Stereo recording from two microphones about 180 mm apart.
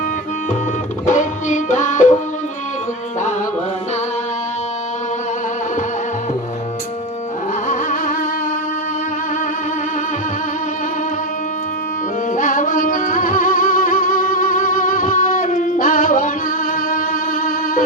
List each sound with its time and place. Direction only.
1.0 s music: 45° left (ahead or behind)
7.7 s music: 45° left (ahead or behind)
12.3 s music: 45° left (ahead or behind)